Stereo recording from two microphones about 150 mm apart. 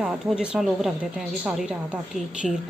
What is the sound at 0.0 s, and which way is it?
Speech, 5° right (ahead or behind).